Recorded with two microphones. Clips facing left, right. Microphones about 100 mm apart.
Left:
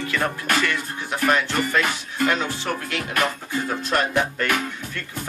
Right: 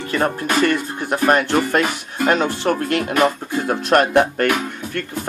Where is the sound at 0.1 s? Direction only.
35° right (ahead or behind).